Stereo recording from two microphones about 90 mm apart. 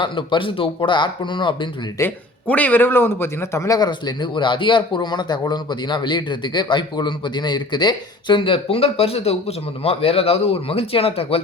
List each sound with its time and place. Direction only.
0.0 s speech: 65° left (ahead or behind)
2.0 s a man's voice: 20° left (ahead or behind)
3.8 s speech: 55° left (ahead or behind); by 11.3 s 90° left